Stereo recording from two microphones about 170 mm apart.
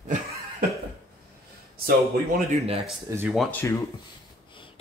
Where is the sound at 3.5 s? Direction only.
10° left (ahead or behind).